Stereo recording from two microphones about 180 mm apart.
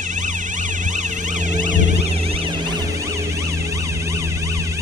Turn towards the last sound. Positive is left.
turn(degrees=-15)  # may be behind; listen again after turning